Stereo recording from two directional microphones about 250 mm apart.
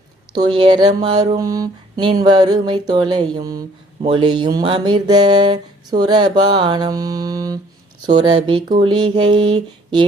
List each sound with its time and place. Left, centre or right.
0.3 s speech: centre